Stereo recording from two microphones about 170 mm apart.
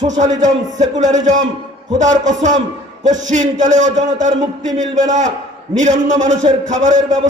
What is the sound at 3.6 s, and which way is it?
A man's voice, 45° right (ahead or behind).